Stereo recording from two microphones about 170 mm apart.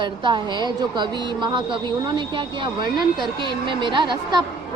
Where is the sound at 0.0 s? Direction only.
25° right (ahead or behind).